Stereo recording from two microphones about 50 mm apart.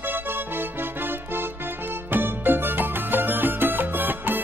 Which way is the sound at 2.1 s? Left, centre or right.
Right.